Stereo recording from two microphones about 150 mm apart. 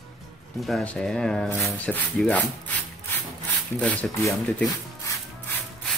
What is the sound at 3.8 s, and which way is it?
Speech, 10° left (ahead or behind).